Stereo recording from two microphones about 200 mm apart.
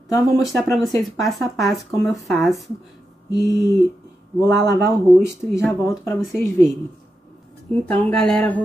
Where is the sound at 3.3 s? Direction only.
20° left (ahead or behind).